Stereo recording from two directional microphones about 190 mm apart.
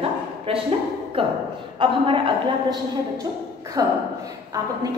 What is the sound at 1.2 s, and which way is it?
A woman's voice, 30° right (ahead or behind).